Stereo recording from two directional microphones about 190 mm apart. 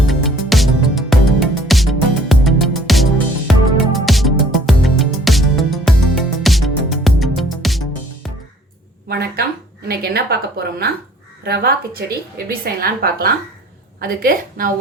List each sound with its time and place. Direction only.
0.1 s music: centre (ahead or behind)
9.0 s a sound: 55° right (ahead or behind)
9.9 s a woman's voice: 55° right (ahead or behind)